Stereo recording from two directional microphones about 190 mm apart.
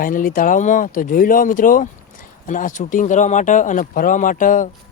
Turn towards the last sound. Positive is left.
turn(degrees=45)  # may be behind; listen again after turning